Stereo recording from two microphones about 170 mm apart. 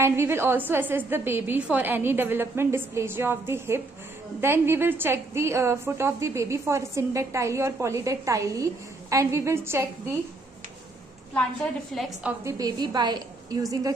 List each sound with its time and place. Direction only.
0.0 s a woman's voice: 15° right (ahead or behind)
11.9 s a woman's voice: 5° right (ahead or behind)
12.5 s a woman's voice: 25° right (ahead or behind)